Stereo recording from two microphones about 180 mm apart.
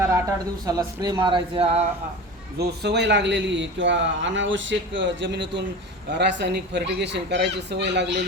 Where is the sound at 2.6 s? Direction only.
65° right (ahead or behind).